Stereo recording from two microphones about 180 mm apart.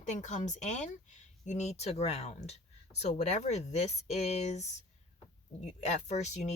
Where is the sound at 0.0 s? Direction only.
40° left (ahead or behind).